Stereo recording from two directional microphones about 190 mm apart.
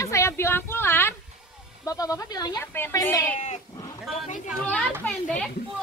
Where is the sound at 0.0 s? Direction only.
15° left (ahead or behind).